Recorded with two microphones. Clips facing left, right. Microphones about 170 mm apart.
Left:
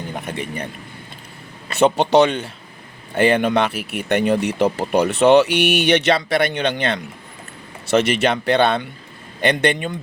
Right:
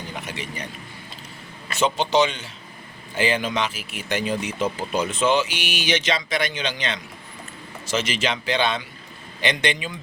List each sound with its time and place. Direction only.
0.1 s speech: 55° left (ahead or behind)
1.7 s speech: 60° left (ahead or behind)